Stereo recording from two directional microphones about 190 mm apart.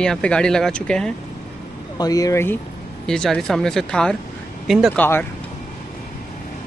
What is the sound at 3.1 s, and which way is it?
Speech, centre (ahead or behind).